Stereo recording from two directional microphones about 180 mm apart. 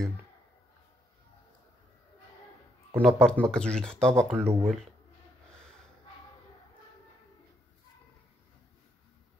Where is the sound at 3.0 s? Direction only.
5° left (ahead or behind).